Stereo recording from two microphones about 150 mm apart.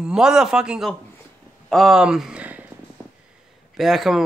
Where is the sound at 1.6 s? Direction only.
Centre (ahead or behind).